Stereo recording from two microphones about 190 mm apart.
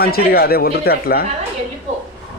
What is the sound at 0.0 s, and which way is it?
Speech, 55° left (ahead or behind).